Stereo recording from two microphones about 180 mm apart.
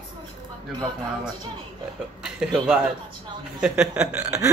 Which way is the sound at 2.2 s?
5° right (ahead or behind).